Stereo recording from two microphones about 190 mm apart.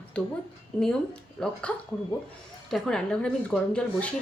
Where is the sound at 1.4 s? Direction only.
5° left (ahead or behind).